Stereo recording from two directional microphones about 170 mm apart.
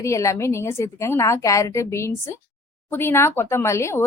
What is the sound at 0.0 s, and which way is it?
Speech, 15° left (ahead or behind).